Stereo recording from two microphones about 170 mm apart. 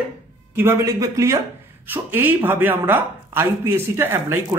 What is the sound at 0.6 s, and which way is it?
Speech, 15° right (ahead or behind).